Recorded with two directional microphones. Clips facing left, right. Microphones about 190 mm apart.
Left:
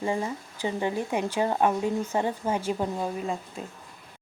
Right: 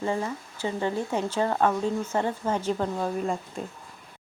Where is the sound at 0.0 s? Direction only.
15° left (ahead or behind).